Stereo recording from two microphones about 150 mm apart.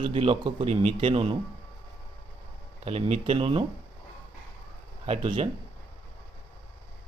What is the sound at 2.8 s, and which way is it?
Speech, 40° right (ahead or behind).